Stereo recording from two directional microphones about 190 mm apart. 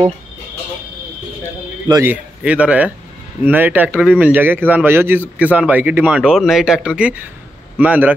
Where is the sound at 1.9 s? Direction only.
15° right (ahead or behind).